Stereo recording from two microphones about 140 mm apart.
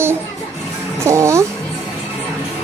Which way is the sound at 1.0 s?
20° right (ahead or behind).